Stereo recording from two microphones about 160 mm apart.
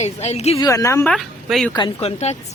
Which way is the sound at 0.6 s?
20° left (ahead or behind).